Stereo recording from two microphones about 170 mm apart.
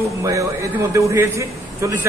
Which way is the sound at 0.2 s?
20° right (ahead or behind).